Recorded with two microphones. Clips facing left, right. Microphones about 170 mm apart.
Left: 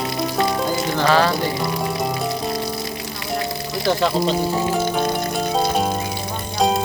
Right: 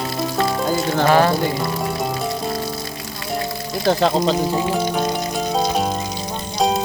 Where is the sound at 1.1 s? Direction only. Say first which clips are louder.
Right 2 dB; 20° right (ahead or behind).